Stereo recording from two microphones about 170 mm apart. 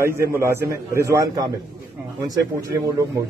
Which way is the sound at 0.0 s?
15° right (ahead or behind).